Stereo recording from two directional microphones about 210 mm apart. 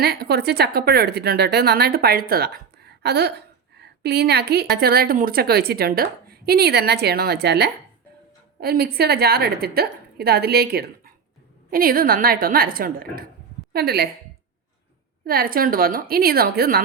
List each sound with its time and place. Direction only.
0.0 s a woman's voice: 50° right (ahead or behind)
15.2 s a woman's voice: 45° right (ahead or behind)